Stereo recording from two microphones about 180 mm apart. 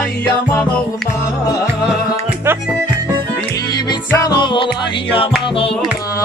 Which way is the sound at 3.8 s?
25° left (ahead or behind).